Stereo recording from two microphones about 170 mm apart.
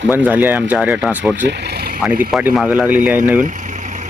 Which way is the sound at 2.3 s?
5° right (ahead or behind).